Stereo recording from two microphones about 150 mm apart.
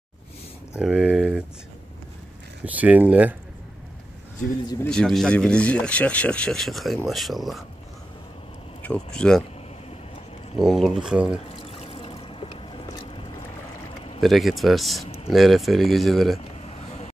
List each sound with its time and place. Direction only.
0.7 s speech: 5° right (ahead or behind)
2.6 s speech: 10° right (ahead or behind)
4.8 s speech: 5° left (ahead or behind)
8.8 s speech: 5° left (ahead or behind)
10.6 s speech: centre (ahead or behind)
11.4 s pour: 40° left (ahead or behind)
14.2 s speech: centre (ahead or behind)
16.6 s vehicle: 50° left (ahead or behind)